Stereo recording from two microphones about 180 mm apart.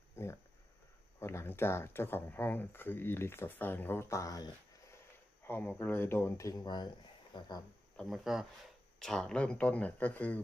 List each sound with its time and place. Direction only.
0.1 s a sound: 15° left (ahead or behind)
1.2 s speech: 15° left (ahead or behind)
5.5 s speech: 10° left (ahead or behind)
7.9 s speech: centre (ahead or behind)